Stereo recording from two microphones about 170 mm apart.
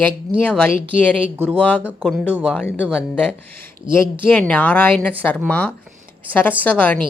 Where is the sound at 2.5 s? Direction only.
10° left (ahead or behind).